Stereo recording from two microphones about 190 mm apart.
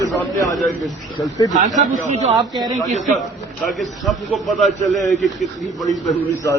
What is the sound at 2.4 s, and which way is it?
Speech, 20° right (ahead or behind).